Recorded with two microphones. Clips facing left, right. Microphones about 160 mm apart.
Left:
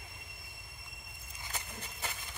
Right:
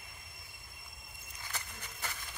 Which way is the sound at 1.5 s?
25° left (ahead or behind).